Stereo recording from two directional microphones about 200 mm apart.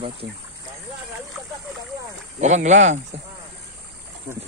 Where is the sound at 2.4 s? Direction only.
35° right (ahead or behind).